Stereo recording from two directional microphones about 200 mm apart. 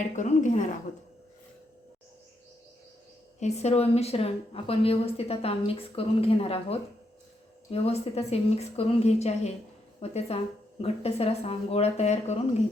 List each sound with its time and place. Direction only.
0.2 s a woman's voice: 35° left (ahead or behind)
3.4 s a woman's voice: 35° left (ahead or behind)